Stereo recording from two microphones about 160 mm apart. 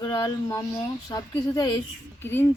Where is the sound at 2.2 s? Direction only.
15° left (ahead or behind).